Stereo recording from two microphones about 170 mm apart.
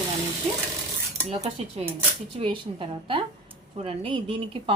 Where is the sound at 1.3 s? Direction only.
40° right (ahead or behind).